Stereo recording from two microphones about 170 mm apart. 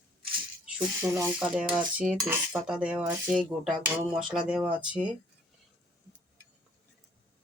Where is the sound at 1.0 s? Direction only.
15° right (ahead or behind).